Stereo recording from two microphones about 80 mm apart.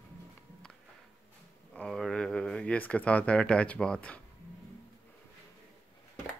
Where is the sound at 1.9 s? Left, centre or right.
Centre.